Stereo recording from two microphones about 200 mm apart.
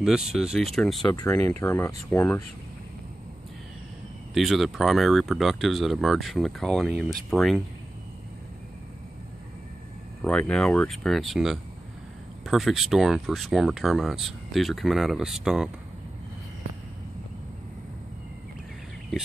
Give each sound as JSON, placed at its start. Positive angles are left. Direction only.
{"t": 0.0, "sound": "speech", "side_deg": -5}
{"t": 1.0, "sound": "speech", "side_deg": 20}
{"t": 4.3, "sound": "speech", "side_deg": 0}
{"t": 10.2, "sound": "speech", "side_deg": 5}